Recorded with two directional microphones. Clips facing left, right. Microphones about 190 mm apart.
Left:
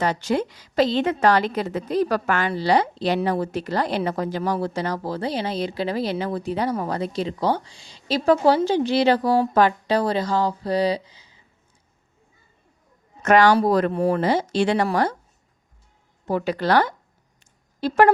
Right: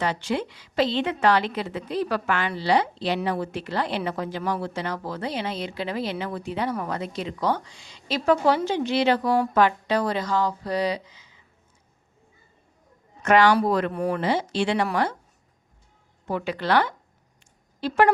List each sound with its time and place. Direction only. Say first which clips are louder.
0.0 s a woman's voice: left 4 dB; 40° left (ahead or behind)
13.2 s a woman's voice: left 2 dB; 45° left (ahead or behind)
16.2 s a woman's voice: left 4 dB; 40° left (ahead or behind)